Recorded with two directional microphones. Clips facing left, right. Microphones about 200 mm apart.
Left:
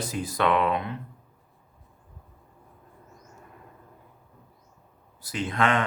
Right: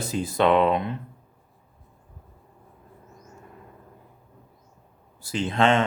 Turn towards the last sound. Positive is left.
turn(degrees=-25)  # may be behind; listen again after turning